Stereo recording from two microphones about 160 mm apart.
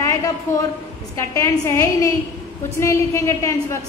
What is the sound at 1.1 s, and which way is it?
A woman's voice, 20° left (ahead or behind).